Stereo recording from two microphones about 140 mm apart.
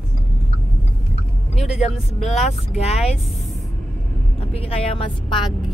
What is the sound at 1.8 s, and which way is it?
Speech, 50° left (ahead or behind).